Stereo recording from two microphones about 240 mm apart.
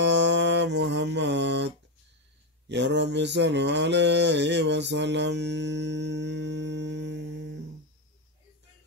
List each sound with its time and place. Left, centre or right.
0.0 s music: right
2.7 s mantra: right